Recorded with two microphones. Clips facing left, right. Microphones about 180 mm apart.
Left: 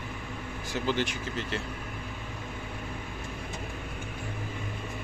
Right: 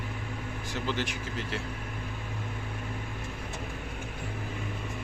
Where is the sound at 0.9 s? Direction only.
Centre (ahead or behind).